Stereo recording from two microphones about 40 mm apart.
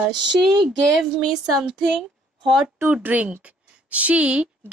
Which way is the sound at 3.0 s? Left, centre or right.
Right.